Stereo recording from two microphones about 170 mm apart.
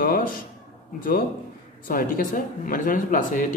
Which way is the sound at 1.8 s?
55° left (ahead or behind).